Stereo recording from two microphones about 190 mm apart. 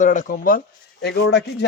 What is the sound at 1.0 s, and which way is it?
Speech, 60° left (ahead or behind).